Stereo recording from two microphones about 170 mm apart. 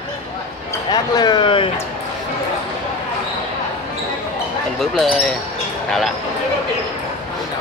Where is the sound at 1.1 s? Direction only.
25° left (ahead or behind).